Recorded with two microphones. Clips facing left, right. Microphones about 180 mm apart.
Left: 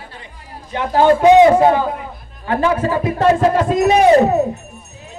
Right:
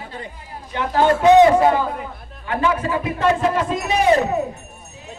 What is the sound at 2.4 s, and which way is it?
A man's voice, 35° left (ahead or behind).